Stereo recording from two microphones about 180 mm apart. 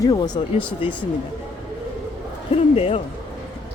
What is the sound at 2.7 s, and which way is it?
Speech, 35° left (ahead or behind).